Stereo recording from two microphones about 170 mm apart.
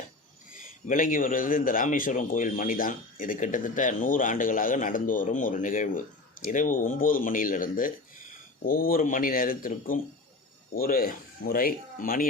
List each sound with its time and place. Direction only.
0.5 s speech: 55° left (ahead or behind)